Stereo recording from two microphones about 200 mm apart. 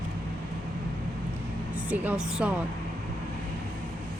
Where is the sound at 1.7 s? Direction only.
10° right (ahead or behind).